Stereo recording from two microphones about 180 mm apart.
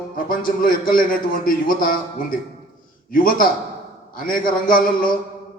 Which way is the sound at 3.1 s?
50° left (ahead or behind).